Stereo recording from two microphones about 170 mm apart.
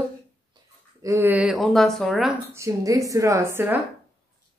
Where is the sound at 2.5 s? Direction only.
20° right (ahead or behind).